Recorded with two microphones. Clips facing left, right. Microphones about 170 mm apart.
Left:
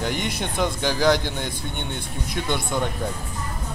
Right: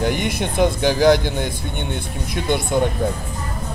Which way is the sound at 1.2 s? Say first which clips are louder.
Right 5 dB; 10° right (ahead or behind).